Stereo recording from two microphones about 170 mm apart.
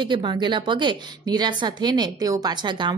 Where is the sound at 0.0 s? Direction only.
25° right (ahead or behind).